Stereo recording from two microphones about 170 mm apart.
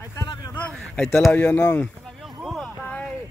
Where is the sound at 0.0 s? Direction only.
20° left (ahead or behind).